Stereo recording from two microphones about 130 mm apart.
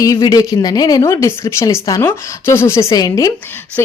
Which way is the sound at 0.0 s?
25° left (ahead or behind).